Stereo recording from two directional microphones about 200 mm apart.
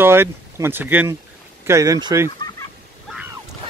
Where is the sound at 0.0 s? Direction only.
10° right (ahead or behind).